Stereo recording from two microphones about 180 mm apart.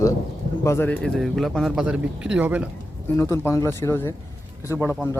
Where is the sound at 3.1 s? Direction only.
15° left (ahead or behind).